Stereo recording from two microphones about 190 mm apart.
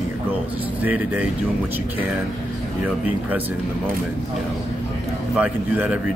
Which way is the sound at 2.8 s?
10° right (ahead or behind).